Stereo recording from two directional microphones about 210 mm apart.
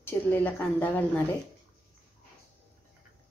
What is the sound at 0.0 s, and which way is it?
A woman's voice, 10° left (ahead or behind).